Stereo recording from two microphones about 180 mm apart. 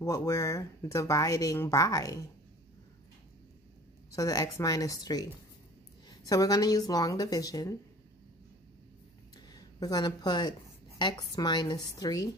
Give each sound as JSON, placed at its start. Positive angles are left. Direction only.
{"t": 0.0, "sound": "speech", "side_deg": 20}
{"t": 4.1, "sound": "speech", "side_deg": 20}
{"t": 9.5, "sound": "speech", "side_deg": 20}